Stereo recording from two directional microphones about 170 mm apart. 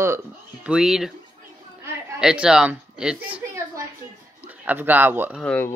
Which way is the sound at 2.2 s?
5° right (ahead or behind).